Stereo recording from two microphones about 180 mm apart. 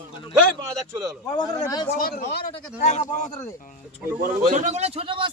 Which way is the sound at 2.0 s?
55° left (ahead or behind).